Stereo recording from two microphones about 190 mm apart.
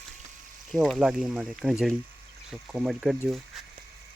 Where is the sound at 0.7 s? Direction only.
Centre (ahead or behind).